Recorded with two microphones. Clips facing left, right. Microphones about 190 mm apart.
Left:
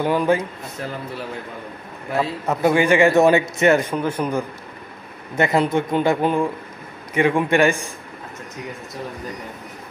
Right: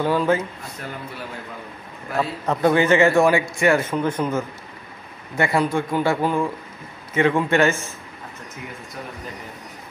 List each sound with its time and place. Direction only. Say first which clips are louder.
0.0 s a man's voice: left 1 dB; 15° left (ahead or behind)
2.1 s a man's voice: left 1 dB; 10° left (ahead or behind)
4.0 s a man's voice: even; 10° left (ahead or behind)